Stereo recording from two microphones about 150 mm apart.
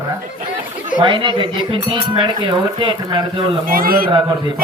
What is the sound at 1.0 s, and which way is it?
Speech, 35° right (ahead or behind).